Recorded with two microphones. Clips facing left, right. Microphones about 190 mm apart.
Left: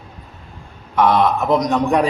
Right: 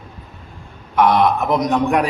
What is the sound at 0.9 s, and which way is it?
Speech, 15° right (ahead or behind).